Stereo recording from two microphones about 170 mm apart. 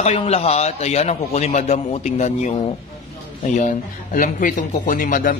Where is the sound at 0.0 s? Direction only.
40° left (ahead or behind).